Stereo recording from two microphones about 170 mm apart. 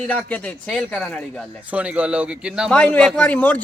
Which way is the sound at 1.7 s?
10° right (ahead or behind).